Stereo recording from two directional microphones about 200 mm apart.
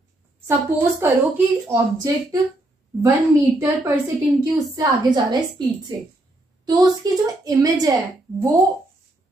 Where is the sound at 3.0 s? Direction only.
15° right (ahead or behind).